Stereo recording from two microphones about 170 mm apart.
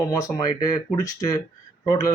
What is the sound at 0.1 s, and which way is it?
A man's voice, 20° left (ahead or behind).